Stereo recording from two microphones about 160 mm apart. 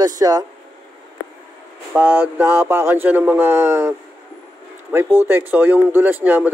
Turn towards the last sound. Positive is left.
turn(degrees=-10)  # may be behind; listen again after turning